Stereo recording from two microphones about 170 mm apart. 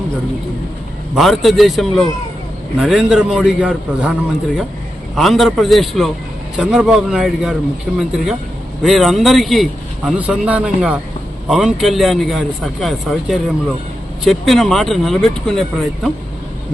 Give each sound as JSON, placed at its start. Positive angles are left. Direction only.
{"t": 1.1, "sound": "a man's voice", "side_deg": 0}